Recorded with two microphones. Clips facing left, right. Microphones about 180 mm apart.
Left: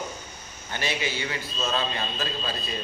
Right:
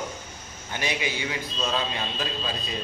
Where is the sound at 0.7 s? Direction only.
15° right (ahead or behind).